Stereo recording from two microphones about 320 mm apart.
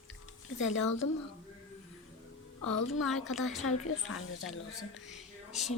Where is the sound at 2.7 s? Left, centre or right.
Left.